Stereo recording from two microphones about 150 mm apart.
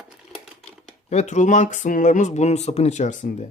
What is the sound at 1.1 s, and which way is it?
Speech, 50° left (ahead or behind).